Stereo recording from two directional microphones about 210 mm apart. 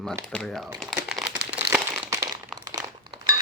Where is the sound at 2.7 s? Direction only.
20° right (ahead or behind).